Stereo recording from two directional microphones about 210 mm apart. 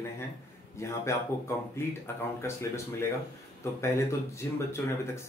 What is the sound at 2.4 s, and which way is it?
Speech, 10° left (ahead or behind).